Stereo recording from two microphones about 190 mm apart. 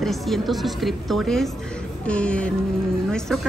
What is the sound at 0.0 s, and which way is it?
A woman's voice, centre (ahead or behind).